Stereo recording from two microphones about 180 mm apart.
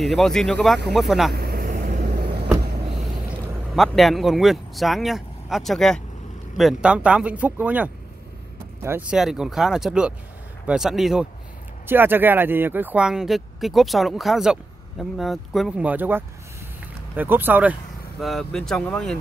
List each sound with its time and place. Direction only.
0.0 s speech: centre (ahead or behind)
1.3 s vehicle: 60° right (ahead or behind)
3.7 s speech: centre (ahead or behind)
18.2 s speech: centre (ahead or behind)